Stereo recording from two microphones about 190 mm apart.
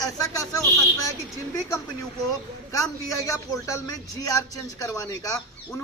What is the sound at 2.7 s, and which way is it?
A man's voice, 15° left (ahead or behind).